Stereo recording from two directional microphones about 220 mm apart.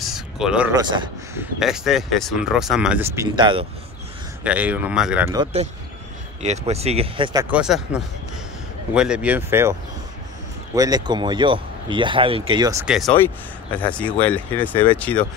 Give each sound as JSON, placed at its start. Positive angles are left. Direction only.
{"t": 0.0, "sound": "a sound", "side_deg": 0}
{"t": 0.7, "sound": "a man's voice", "side_deg": -20}
{"t": 1.4, "sound": "speech", "side_deg": 0}
{"t": 4.4, "sound": "speech", "side_deg": -5}
{"t": 5.3, "sound": "speech", "side_deg": -25}
{"t": 7.3, "sound": "speech", "side_deg": -5}
{"t": 12.8, "sound": "speech", "side_deg": -5}